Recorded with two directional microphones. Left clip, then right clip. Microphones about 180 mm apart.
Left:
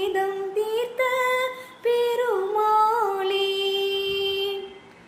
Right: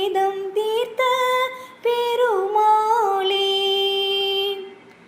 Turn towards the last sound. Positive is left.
turn(degrees=-20)  # may be behind; listen again after turning